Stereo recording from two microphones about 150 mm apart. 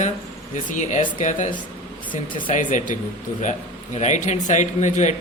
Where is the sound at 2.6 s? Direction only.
60° left (ahead or behind).